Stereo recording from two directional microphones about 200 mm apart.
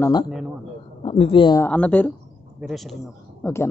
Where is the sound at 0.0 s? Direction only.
20° left (ahead or behind).